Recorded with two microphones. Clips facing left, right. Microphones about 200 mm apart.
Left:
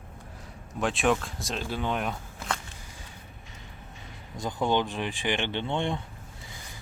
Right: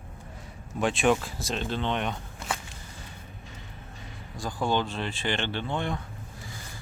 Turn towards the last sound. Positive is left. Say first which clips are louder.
# left 1 dB
turn(degrees=25)  # may be behind; listen again after turning